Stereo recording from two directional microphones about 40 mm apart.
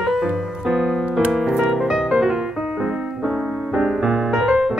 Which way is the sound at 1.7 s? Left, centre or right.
Centre.